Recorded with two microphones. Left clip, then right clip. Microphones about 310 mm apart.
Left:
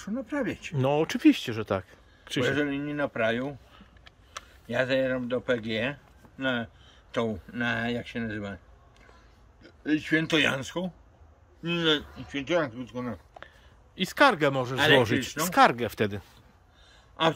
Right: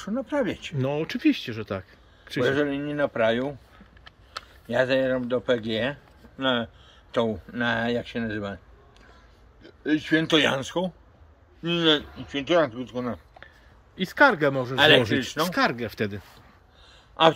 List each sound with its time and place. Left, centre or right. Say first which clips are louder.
0.0 s speech: right 5 dB; centre
9.6 s speech: right 3 dB; centre